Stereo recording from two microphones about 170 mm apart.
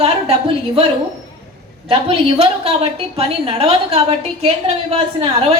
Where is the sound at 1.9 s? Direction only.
35° right (ahead or behind).